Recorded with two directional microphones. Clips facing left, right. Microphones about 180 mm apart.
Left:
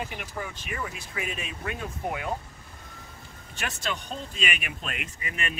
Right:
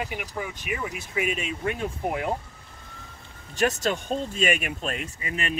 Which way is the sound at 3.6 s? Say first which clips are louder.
Right 9 dB; 40° right (ahead or behind).